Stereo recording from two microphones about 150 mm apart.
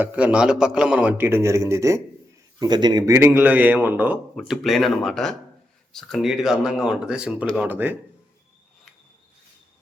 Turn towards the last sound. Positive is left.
turn(degrees=-10)  # may be behind; listen again after turning